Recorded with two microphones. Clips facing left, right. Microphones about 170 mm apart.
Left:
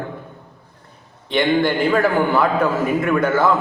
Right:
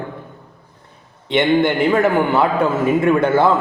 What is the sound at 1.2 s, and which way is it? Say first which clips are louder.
A man's voice: right 2 dB; 20° right (ahead or behind).